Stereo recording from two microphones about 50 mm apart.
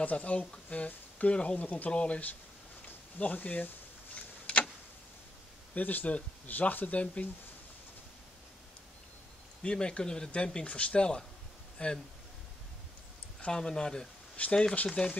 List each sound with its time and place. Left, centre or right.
0.0 s speech: left
3.2 s a sound: left
5.8 s speech: left
9.6 s speech: centre
13.5 s speech: centre
14.3 s speech: left